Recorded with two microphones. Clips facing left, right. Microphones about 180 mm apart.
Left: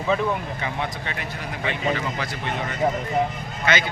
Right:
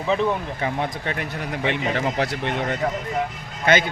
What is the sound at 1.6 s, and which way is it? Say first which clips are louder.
Speech: right 2 dB; 65° right (ahead or behind).